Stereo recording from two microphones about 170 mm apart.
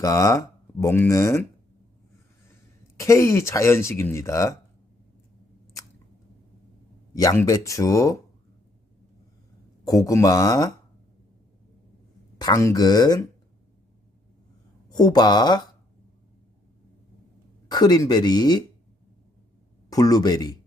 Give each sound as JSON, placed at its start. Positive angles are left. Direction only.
{"t": 0.0, "sound": "speech", "side_deg": 20}
{"t": 3.0, "sound": "speech", "side_deg": 15}
{"t": 7.1, "sound": "speech", "side_deg": 20}
{"t": 9.8, "sound": "speech", "side_deg": 20}
{"t": 12.4, "sound": "speech", "side_deg": 20}
{"t": 14.8, "sound": "speech", "side_deg": 25}
{"t": 17.7, "sound": "speech", "side_deg": 25}
{"t": 19.9, "sound": "speech", "side_deg": 20}